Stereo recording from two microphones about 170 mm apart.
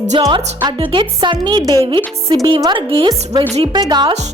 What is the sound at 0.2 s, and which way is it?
A woman's voice, 25° right (ahead or behind).